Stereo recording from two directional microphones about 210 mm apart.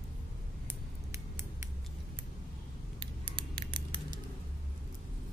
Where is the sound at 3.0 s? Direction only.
25° right (ahead or behind).